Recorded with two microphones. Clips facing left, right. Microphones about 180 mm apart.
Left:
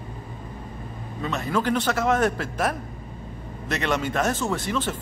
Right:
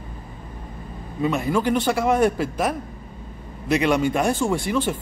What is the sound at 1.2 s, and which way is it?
A man's voice, 15° right (ahead or behind).